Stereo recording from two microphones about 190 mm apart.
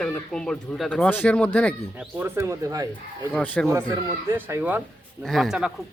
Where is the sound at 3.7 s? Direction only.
15° right (ahead or behind).